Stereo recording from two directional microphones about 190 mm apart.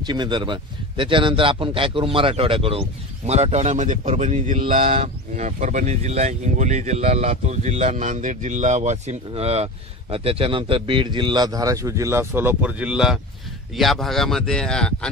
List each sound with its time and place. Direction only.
0.0 s a man's voice: 25° right (ahead or behind); by 15.0 s 5° left (ahead or behind)